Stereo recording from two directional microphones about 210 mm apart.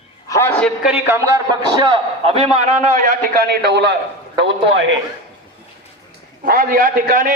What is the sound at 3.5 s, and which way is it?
Speech, 55° right (ahead or behind).